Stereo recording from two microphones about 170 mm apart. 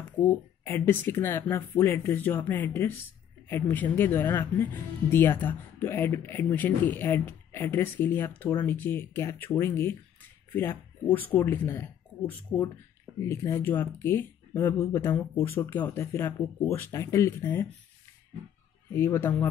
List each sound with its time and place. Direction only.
0.7 s speech: 10° left (ahead or behind)
18.9 s speech: 15° left (ahead or behind)